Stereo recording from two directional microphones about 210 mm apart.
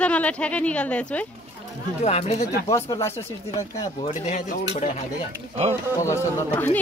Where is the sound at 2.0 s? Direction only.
30° left (ahead or behind).